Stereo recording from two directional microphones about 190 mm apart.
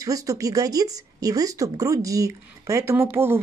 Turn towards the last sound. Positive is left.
turn(degrees=-10)  # may be behind; listen again after turning